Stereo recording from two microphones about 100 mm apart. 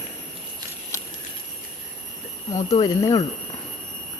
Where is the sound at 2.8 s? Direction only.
40° left (ahead or behind).